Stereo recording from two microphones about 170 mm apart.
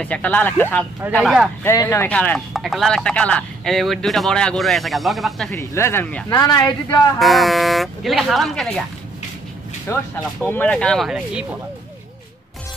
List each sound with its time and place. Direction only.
0.0 s speech: 10° left (ahead or behind)
1.1 s speech: centre (ahead or behind)
1.6 s speech: 15° left (ahead or behind); by 5.5 s centre (ahead or behind)
5.5 s speech: 15° left (ahead or behind)
7.2 s speech: centre (ahead or behind)
9.9 s speech: 15° left (ahead or behind); by 11.4 s 5° right (ahead or behind)